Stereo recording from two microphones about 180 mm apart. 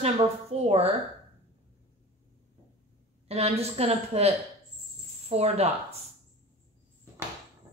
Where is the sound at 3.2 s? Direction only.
35° right (ahead or behind).